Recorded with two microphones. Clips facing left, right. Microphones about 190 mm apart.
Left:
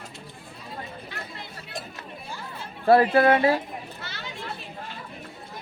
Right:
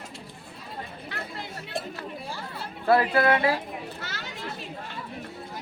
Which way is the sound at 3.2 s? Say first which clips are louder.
Left 3 dB; 40° left (ahead or behind).